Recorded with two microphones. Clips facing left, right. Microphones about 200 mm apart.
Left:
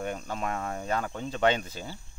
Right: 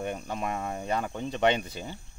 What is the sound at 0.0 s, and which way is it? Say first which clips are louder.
Speech: even; 15° right (ahead or behind).